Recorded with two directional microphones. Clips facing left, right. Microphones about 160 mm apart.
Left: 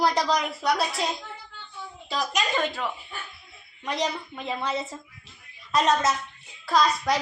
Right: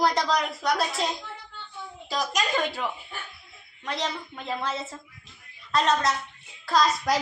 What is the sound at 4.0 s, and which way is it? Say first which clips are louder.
Speech: left 5 dB; centre (ahead or behind).